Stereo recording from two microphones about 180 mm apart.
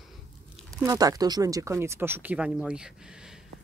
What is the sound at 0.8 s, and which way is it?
Speech, 20° right (ahead or behind).